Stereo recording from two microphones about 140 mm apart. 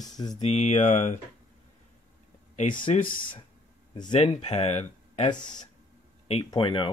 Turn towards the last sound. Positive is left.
turn(degrees=35)  # may be behind; listen again after turning